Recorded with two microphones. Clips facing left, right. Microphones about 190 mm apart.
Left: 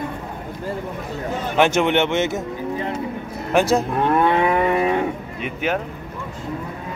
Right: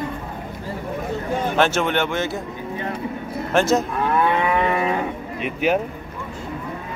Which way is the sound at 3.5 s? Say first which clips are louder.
Left 1 dB; 10° left (ahead or behind).